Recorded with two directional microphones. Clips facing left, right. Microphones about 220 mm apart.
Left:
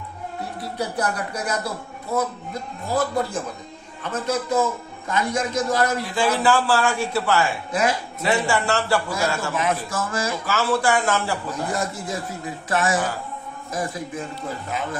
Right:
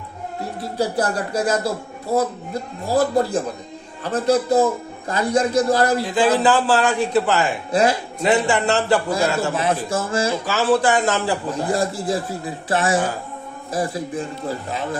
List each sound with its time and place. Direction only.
0.8 s speech: 30° right (ahead or behind)
6.1 s speech: 20° right (ahead or behind)
7.7 s speech: 30° right (ahead or behind)
8.3 s speech: 20° right (ahead or behind)
9.1 s speech: 30° right (ahead or behind)
11.7 s speech: 30° right (ahead or behind)